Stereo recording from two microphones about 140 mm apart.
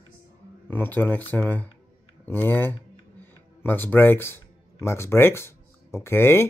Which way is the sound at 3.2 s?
15° left (ahead or behind).